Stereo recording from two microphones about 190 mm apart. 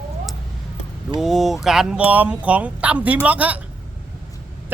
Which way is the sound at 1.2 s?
Centre (ahead or behind).